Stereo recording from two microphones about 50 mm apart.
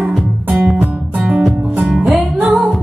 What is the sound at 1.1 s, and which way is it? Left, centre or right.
Music, right.